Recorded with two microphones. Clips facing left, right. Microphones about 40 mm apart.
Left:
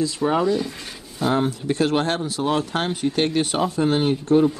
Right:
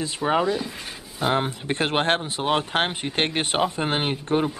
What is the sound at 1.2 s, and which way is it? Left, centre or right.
Speech, right.